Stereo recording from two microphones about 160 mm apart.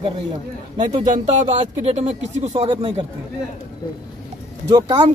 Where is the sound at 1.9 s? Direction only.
40° right (ahead or behind).